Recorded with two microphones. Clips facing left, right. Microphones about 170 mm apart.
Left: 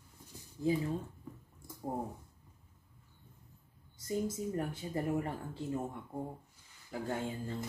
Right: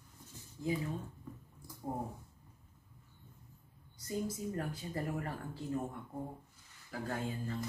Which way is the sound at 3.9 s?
25° left (ahead or behind).